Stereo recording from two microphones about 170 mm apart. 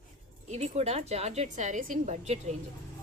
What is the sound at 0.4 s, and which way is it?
A woman's voice, 40° right (ahead or behind).